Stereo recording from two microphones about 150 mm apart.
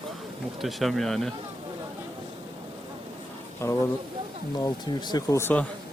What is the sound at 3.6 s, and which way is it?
Speech, 15° left (ahead or behind).